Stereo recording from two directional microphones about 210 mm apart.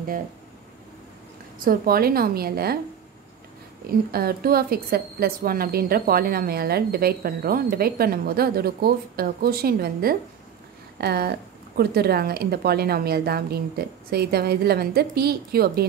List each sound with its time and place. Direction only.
1.6 s a woman's voice: 45° right (ahead or behind)
4.1 s a woman's voice: 45° right (ahead or behind)